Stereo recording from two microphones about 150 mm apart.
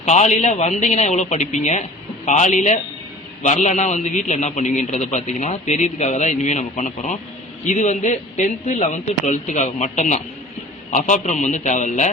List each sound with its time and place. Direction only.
0.0 s a man's voice: 50° left (ahead or behind)